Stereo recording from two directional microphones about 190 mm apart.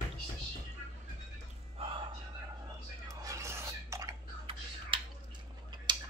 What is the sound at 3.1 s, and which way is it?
Music, 15° right (ahead or behind).